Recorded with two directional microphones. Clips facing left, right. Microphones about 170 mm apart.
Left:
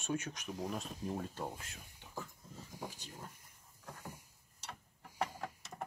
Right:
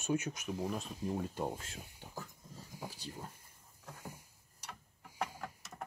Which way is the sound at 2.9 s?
35° right (ahead or behind).